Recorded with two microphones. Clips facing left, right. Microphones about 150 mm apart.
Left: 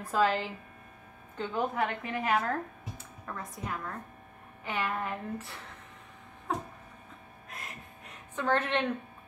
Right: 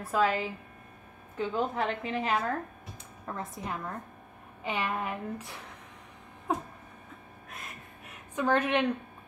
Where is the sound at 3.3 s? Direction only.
25° right (ahead or behind).